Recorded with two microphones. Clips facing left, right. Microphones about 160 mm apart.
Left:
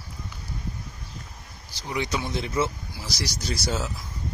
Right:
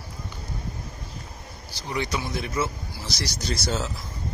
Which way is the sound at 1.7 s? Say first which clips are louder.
Even; 15° left (ahead or behind).